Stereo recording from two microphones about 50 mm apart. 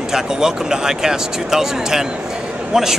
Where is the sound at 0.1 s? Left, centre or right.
Centre.